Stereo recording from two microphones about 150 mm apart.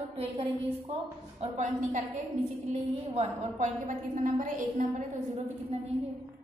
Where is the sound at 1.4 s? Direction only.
55° right (ahead or behind).